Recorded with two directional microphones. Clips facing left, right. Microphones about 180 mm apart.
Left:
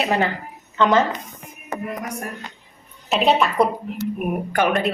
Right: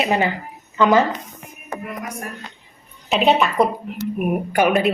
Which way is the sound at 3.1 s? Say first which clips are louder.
Right 1 dB; centre (ahead or behind).